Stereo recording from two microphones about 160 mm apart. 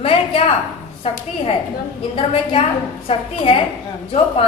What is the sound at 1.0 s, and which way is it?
Speech, 35° left (ahead or behind).